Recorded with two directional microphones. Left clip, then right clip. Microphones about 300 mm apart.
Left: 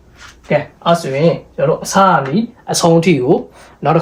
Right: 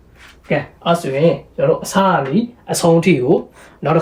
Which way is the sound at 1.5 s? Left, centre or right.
Centre.